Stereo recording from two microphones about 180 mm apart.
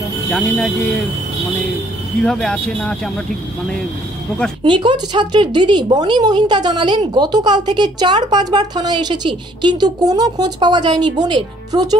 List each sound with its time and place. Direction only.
0.3 s speech: 5° left (ahead or behind)
2.2 s speech: 5° left (ahead or behind)
4.6 s speech: 25° right (ahead or behind)